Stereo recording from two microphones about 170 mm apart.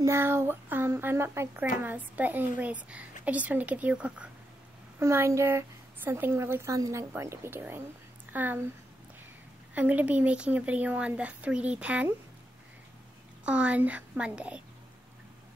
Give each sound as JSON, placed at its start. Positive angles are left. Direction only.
{"t": 0.0, "sound": "a woman's voice", "side_deg": -15}
{"t": 9.8, "sound": "a woman's voice", "side_deg": -10}
{"t": 13.5, "sound": "a woman's voice", "side_deg": -10}